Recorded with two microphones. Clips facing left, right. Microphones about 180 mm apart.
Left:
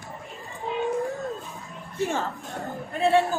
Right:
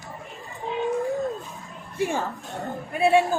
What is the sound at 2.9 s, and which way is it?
Speech, 10° right (ahead or behind).